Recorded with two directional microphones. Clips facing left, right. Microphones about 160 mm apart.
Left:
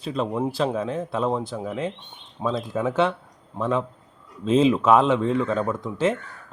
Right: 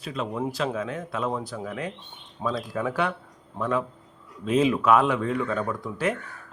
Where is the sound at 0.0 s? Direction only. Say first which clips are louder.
Left 4 dB; 30° left (ahead or behind).